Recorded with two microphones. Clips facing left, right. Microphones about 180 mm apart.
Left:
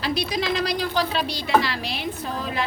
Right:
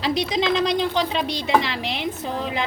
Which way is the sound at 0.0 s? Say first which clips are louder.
Right 3 dB; 20° right (ahead or behind).